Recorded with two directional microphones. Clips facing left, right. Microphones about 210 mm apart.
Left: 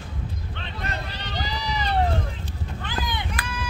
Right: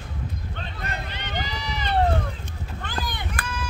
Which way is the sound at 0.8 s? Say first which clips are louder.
Left 2 dB; 35° left (ahead or behind).